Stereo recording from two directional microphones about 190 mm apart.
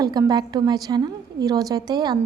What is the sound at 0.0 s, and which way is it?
A woman's voice, 20° right (ahead or behind).